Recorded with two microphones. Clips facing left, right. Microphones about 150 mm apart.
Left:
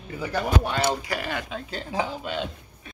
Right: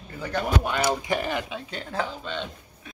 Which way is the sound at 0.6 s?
20° right (ahead or behind).